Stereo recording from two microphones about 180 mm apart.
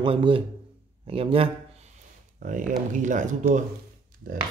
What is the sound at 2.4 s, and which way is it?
Speech, 45° right (ahead or behind).